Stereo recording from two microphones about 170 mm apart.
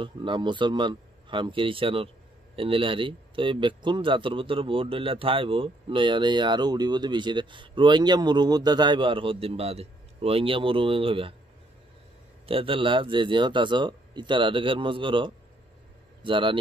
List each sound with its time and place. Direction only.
0.0 s speech: 30° right (ahead or behind)
12.4 s speech: 30° right (ahead or behind)